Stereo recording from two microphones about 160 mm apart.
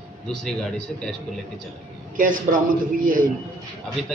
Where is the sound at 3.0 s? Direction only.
60° right (ahead or behind).